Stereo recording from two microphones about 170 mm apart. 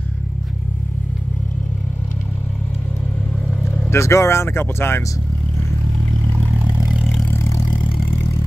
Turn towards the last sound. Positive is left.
turn(degrees=30)  # may be behind; listen again after turning